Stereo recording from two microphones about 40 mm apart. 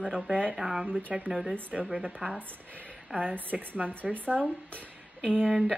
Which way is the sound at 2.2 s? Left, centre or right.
Right.